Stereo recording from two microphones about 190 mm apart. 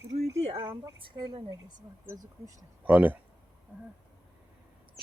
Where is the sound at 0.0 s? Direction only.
65° right (ahead or behind).